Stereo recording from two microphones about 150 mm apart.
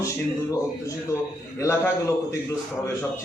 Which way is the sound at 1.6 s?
15° left (ahead or behind).